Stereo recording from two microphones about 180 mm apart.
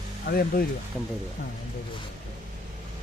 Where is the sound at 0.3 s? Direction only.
55° left (ahead or behind).